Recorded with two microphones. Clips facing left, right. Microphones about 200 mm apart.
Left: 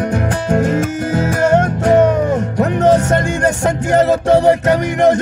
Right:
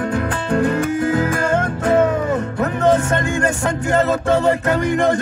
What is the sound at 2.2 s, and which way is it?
Music, 40° left (ahead or behind).